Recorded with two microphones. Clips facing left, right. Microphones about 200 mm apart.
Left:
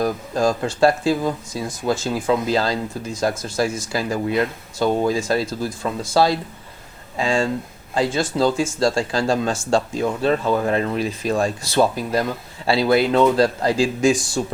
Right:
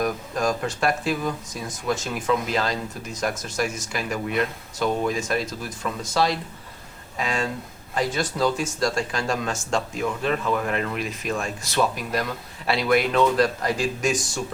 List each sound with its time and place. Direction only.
0.0 s speech: 30° left (ahead or behind)